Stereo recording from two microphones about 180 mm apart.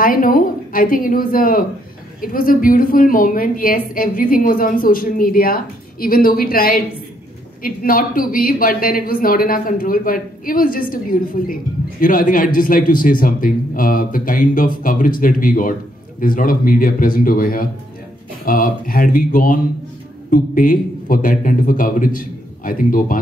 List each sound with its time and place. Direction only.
0.0 s a woman's voice: 50° left (ahead or behind)